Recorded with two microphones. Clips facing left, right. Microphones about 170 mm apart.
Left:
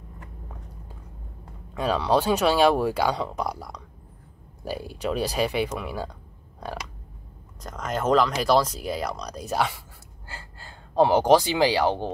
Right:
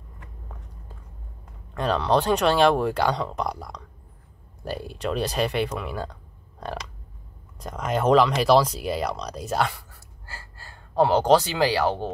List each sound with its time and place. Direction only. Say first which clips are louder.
1.7 s speech: even; 5° left (ahead or behind)
7.6 s speech: right 3 dB; 10° right (ahead or behind)
10.2 s speech: left 1 dB; 20° left (ahead or behind)